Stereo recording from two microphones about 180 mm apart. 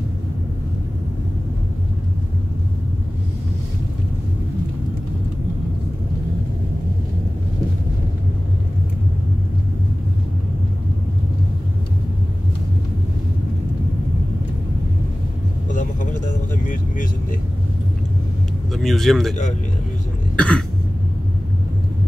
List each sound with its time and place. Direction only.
15.7 s vehicle: 45° left (ahead or behind)
18.7 s vehicle: centre (ahead or behind)
20.3 s cough: 5° left (ahead or behind)